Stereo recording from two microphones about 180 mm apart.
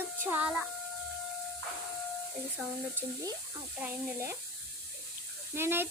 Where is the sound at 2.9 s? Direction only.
20° right (ahead or behind).